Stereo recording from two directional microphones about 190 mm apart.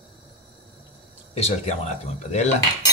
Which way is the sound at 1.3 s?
35° left (ahead or behind).